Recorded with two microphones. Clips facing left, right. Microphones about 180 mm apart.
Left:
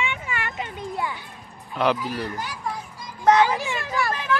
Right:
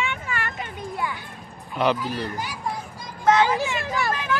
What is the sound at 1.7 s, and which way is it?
Speech, centre (ahead or behind).